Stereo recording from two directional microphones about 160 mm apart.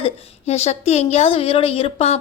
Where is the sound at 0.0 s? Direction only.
40° left (ahead or behind).